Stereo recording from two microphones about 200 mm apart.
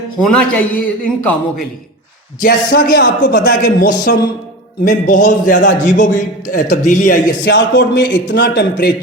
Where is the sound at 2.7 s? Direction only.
60° left (ahead or behind).